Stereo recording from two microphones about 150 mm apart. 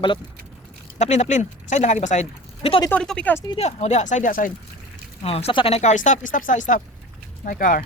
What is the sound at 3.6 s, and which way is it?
Speech, 50° left (ahead or behind).